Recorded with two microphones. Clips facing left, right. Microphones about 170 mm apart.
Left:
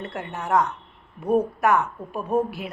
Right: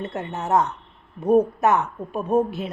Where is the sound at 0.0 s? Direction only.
20° right (ahead or behind).